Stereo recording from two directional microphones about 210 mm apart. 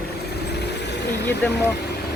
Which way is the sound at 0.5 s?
55° left (ahead or behind).